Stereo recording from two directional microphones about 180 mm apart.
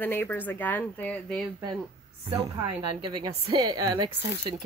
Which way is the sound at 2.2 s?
20° right (ahead or behind).